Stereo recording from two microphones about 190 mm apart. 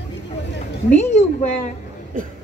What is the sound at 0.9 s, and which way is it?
Chant, 40° left (ahead or behind).